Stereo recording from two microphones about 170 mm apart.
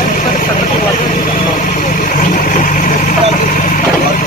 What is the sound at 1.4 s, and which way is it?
Vehicle, 50° left (ahead or behind).